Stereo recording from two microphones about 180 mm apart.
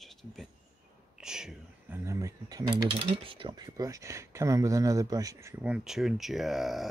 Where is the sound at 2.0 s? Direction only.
15° right (ahead or behind).